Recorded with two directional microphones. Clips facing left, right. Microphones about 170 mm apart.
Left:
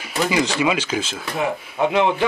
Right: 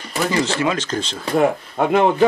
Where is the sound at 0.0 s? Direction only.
10° left (ahead or behind).